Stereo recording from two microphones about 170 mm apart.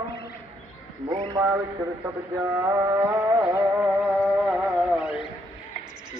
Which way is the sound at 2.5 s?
15° right (ahead or behind).